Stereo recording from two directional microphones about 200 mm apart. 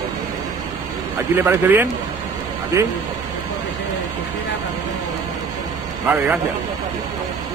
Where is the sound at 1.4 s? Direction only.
10° right (ahead or behind).